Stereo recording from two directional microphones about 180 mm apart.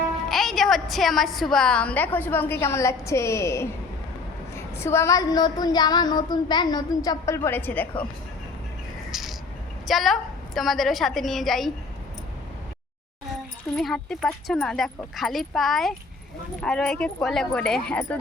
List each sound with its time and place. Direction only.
0.3 s a woman's voice: centre (ahead or behind)
4.5 s female singing: 15° left (ahead or behind)
9.1 s cricket: centre (ahead or behind)
9.8 s a woman's voice: centre (ahead or behind)
13.7 s speech: centre (ahead or behind)